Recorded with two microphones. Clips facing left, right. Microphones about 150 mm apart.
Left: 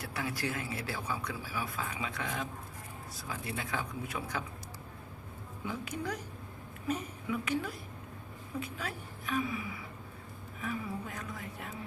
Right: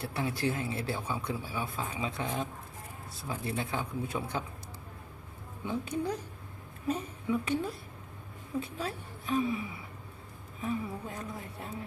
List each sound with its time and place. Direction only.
0.0 s speech: 25° right (ahead or behind)
5.6 s a woman's voice: 25° right (ahead or behind)